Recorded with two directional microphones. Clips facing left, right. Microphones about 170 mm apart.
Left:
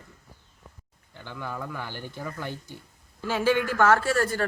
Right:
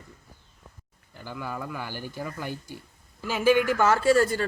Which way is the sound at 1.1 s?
10° right (ahead or behind).